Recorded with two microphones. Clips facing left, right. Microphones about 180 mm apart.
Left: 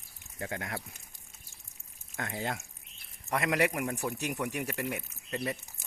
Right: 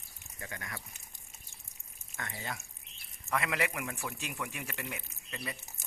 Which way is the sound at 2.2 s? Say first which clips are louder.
Left 6 dB; 70° left (ahead or behind).